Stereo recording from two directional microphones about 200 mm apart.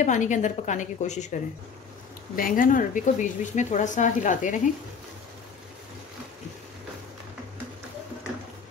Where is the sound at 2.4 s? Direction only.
40° left (ahead or behind).